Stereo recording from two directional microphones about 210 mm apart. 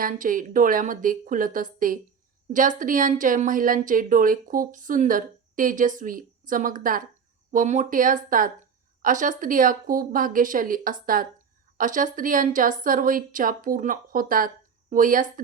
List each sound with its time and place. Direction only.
0.0 s speech: 40° right (ahead or behind)